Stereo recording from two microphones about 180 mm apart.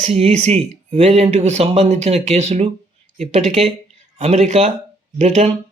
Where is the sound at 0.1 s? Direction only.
35° right (ahead or behind).